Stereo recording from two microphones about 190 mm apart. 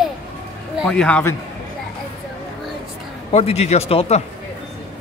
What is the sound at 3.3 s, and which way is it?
Speech, 35° left (ahead or behind).